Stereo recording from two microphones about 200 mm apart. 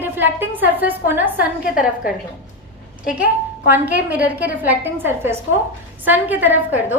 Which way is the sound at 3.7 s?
10° right (ahead or behind).